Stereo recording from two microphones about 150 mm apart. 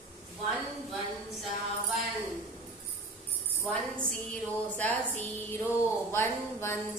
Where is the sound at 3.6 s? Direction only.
10° left (ahead or behind).